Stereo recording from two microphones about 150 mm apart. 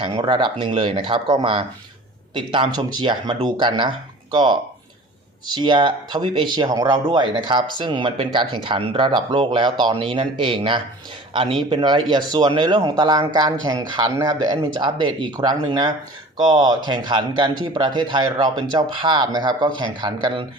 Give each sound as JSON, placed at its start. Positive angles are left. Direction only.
{"t": 0.0, "sound": "speech", "side_deg": -35}